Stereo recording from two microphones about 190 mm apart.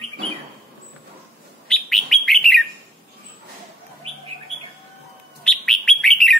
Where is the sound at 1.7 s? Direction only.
Centre (ahead or behind).